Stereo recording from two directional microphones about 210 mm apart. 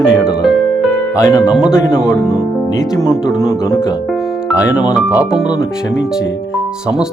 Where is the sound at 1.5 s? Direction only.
5° right (ahead or behind).